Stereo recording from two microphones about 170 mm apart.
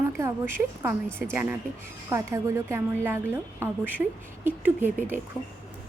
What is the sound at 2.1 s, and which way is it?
A woman's voice, 15° right (ahead or behind).